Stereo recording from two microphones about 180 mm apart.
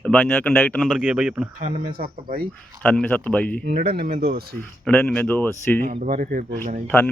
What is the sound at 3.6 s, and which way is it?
Speech, 50° right (ahead or behind).